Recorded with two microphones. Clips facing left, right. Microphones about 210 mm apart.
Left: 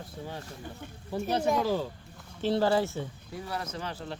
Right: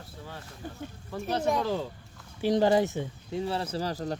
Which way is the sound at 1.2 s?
5° left (ahead or behind).